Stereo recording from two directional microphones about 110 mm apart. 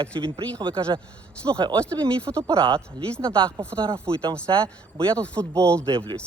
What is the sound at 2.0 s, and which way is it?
Speech, 10° left (ahead or behind).